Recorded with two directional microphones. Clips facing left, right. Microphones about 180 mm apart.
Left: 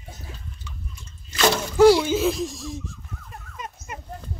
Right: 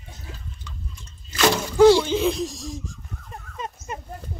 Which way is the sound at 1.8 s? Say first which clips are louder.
Right 1 dB; 5° left (ahead or behind).